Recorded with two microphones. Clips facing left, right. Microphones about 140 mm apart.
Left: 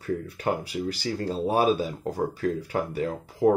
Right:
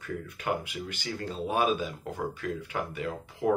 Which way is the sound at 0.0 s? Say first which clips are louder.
Left 7 dB; 35° left (ahead or behind).